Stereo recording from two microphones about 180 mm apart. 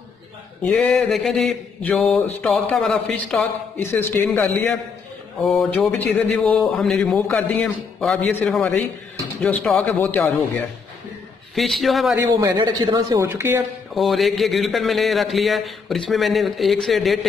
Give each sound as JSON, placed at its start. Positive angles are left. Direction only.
{"t": 0.7, "sound": "a man's voice", "side_deg": 5}
{"t": 11.5, "sound": "a man's voice", "side_deg": 0}
{"t": 12.3, "sound": "a man's voice", "side_deg": -20}
{"t": 13.3, "sound": "speech", "side_deg": -10}
{"t": 13.9, "sound": "a man's voice", "side_deg": 0}